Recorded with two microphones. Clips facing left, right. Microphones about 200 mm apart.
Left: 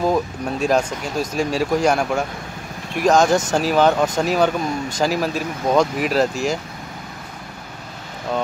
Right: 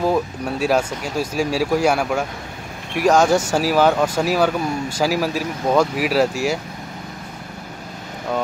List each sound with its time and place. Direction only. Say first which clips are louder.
0.0 s speech: even; 5° right (ahead or behind)